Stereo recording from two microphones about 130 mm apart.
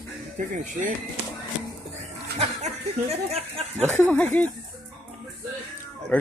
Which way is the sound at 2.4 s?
55° right (ahead or behind).